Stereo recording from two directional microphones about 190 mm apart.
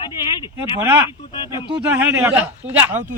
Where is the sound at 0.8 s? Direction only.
10° right (ahead or behind).